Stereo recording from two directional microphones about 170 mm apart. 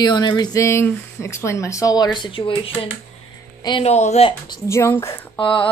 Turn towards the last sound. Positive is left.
turn(degrees=30)  # may be behind; listen again after turning